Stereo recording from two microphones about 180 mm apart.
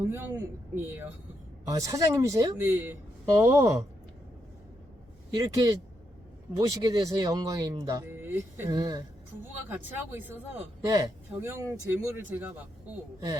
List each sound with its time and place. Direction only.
0.0 s speech: 10° right (ahead or behind)
5.3 s speech: 20° right (ahead or behind)